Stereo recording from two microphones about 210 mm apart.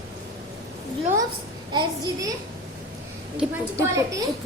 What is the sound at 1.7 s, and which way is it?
Speech, 20° right (ahead or behind).